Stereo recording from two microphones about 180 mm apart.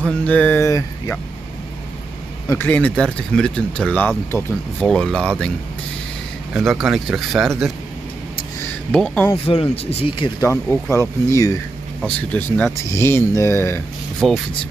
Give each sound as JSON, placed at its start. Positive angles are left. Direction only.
{"t": 0.3, "sound": "speech", "side_deg": 10}
{"t": 2.4, "sound": "speech", "side_deg": 10}
{"t": 6.5, "sound": "speech", "side_deg": 0}
{"t": 8.9, "sound": "speech", "side_deg": 5}
{"t": 9.5, "sound": "speech", "side_deg": 30}
{"t": 10.4, "sound": "speech", "side_deg": 15}
{"t": 14.2, "sound": "speech", "side_deg": 0}